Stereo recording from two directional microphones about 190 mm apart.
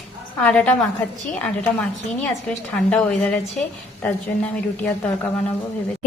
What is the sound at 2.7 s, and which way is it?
Speech, 5° left (ahead or behind).